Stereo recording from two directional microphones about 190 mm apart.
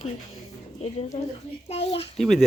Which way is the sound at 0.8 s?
35° left (ahead or behind).